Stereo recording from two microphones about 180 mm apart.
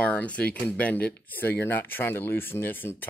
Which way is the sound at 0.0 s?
5° left (ahead or behind).